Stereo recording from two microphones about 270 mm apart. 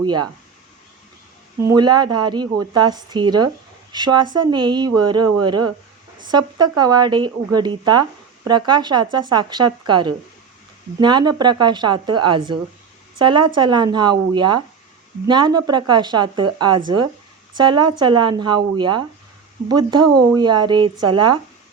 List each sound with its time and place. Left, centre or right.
0.0 s a woman's voice: centre
1.6 s a woman's voice: centre